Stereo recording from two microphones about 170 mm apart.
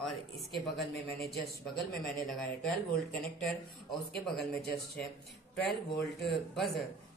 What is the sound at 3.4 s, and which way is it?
Speech, centre (ahead or behind).